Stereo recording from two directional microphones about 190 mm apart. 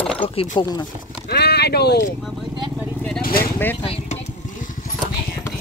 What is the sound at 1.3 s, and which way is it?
Clip-clop, 60° left (ahead or behind).